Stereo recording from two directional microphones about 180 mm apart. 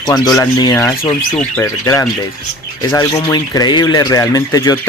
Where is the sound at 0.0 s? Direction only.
20° left (ahead or behind).